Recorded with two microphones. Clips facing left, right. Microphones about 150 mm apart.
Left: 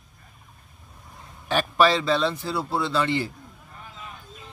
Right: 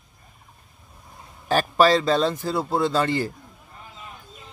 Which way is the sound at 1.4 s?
40° right (ahead or behind).